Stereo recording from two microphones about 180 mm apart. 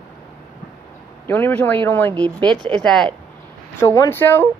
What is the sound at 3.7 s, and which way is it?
Speech, 15° left (ahead or behind).